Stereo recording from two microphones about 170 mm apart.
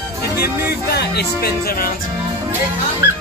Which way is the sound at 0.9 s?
70° left (ahead or behind).